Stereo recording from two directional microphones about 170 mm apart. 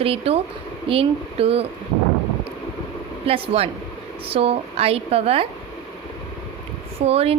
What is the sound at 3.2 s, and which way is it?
A woman's voice, 35° right (ahead or behind).